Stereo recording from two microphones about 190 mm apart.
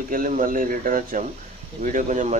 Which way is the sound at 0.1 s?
45° right (ahead or behind).